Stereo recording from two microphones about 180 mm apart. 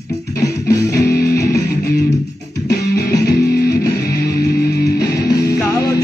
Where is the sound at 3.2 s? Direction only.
60° left (ahead or behind).